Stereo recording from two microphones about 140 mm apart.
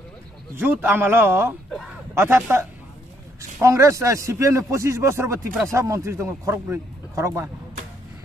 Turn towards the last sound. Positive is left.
turn(degrees=-20)  # may be behind; listen again after turning